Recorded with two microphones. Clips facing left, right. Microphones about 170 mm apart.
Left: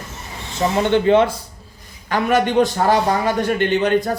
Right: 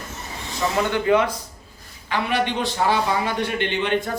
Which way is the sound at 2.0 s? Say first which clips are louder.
Left 5 dB; 45° left (ahead or behind).